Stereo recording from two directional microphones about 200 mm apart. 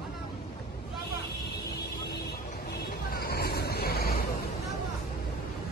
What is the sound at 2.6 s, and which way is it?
Vehicle, 50° left (ahead or behind).